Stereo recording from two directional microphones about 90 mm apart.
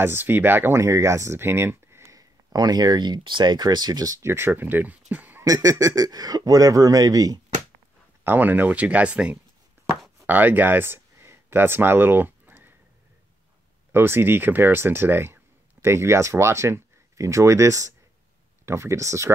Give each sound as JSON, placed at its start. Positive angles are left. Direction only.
{"t": 0.0, "sound": "speech", "side_deg": -25}
{"t": 0.7, "sound": "speech", "side_deg": -35}
{"t": 2.5, "sound": "speech", "side_deg": -50}
{"t": 4.2, "sound": "speech", "side_deg": -25}
{"t": 5.4, "sound": "speech", "side_deg": -40}
{"t": 8.2, "sound": "speech", "side_deg": -20}
{"t": 10.2, "sound": "a sound", "side_deg": -20}
{"t": 13.9, "sound": "speech", "side_deg": -25}